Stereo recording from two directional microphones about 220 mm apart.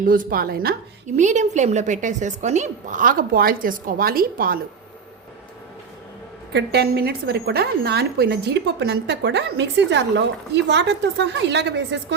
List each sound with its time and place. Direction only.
0.0 s a woman's voice: 40° right (ahead or behind)
6.5 s a woman's voice: 50° right (ahead or behind)